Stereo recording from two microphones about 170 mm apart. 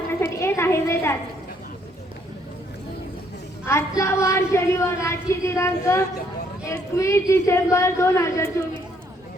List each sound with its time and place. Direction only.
0.2 s a woman's voice: 15° left (ahead or behind)
3.7 s speech: 15° left (ahead or behind)